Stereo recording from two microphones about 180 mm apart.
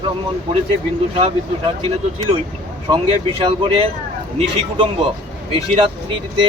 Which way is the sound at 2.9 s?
30° right (ahead or behind).